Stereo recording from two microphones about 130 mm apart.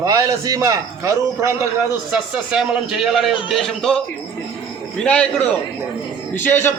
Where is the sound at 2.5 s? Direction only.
5° right (ahead or behind).